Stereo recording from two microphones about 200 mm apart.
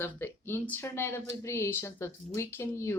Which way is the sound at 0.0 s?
10° left (ahead or behind).